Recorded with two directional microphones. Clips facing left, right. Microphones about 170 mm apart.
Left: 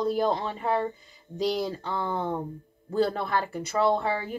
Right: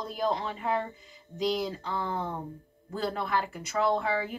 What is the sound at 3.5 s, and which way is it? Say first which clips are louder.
Speech: left 4 dB; 30° left (ahead or behind).